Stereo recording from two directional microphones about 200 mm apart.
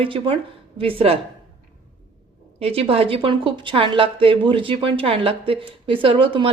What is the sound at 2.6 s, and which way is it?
A woman's voice, 30° right (ahead or behind).